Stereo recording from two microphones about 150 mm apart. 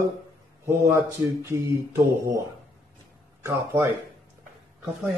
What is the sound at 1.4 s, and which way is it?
Speech, 20° right (ahead or behind).